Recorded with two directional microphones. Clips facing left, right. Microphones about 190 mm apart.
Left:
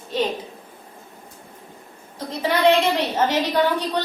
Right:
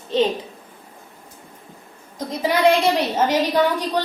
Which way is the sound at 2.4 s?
10° right (ahead or behind).